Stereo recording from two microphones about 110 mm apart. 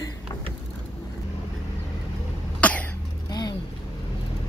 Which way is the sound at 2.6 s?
15° left (ahead or behind).